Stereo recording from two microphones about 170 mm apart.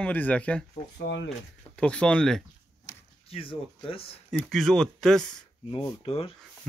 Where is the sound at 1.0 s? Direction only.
90° left.